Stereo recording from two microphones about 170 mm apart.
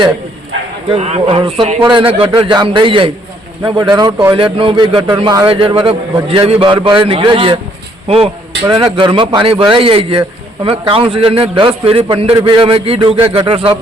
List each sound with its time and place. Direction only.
0.9 s a man's voice: 40° right (ahead or behind)